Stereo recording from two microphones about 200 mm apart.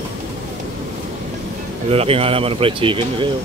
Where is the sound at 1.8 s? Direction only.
30° right (ahead or behind).